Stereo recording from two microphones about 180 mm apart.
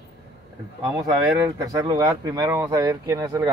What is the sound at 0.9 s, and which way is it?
Speech, 15° right (ahead or behind).